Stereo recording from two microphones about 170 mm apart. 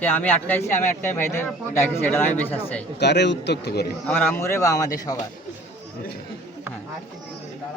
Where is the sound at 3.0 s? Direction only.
85° left.